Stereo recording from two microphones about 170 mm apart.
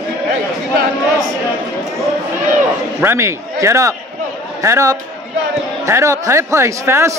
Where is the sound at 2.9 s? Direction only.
15° right (ahead or behind).